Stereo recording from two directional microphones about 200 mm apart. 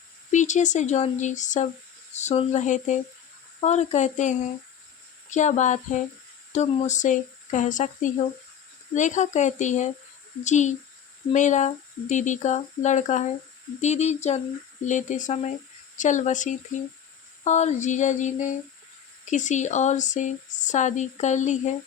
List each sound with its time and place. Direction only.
0.3 s speech: 35° left (ahead or behind)